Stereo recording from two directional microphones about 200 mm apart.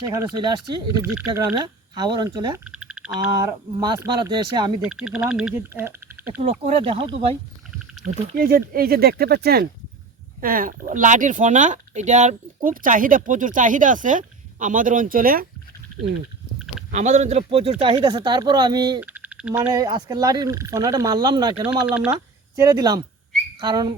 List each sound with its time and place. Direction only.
0.1 s speech: 15° right (ahead or behind)
2.6 s a sound: 5° right (ahead or behind)
3.3 s speech: 20° right (ahead or behind)
4.8 s speech: 5° right (ahead or behind)
6.4 s speech: 30° right (ahead or behind)
8.0 s speech: 45° right (ahead or behind)
16.9 s speech: 35° right (ahead or behind)
18.9 s a sound: 5° right (ahead or behind)
19.7 s speech: 20° right (ahead or behind)
21.7 s speech: 5° right (ahead or behind)
22.6 s speech: 20° right (ahead or behind)